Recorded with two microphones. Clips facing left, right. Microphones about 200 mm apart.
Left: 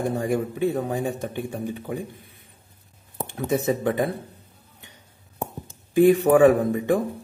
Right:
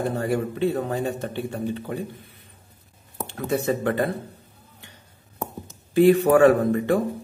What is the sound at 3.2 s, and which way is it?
A man's voice, 15° left (ahead or behind).